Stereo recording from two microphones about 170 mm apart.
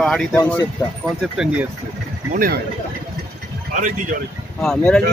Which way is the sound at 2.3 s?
55° right (ahead or behind).